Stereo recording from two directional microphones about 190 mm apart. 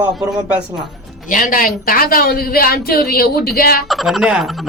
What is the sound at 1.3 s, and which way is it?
A woman's voice, 45° left (ahead or behind).